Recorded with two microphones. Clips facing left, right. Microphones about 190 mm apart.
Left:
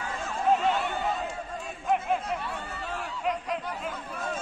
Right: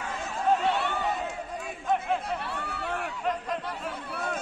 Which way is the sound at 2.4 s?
70° right (ahead or behind).